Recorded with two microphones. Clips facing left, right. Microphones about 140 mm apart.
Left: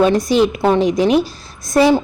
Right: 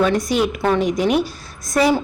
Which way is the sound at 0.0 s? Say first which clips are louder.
Left 4 dB; 30° left (ahead or behind).